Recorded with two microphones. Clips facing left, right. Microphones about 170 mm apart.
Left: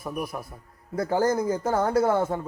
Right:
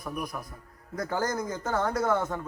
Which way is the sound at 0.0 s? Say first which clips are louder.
Left 3 dB; 30° left (ahead or behind).